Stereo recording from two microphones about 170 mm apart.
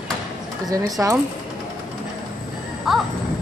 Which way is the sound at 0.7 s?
20° right (ahead or behind).